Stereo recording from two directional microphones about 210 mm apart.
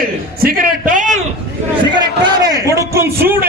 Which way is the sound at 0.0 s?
45° right (ahead or behind).